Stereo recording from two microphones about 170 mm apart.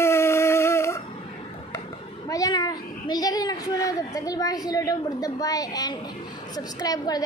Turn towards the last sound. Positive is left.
turn(degrees=20)  # may be behind; listen again after turning